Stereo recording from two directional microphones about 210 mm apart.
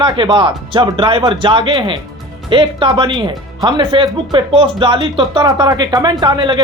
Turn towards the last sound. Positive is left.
turn(degrees=-20)  # may be behind; listen again after turning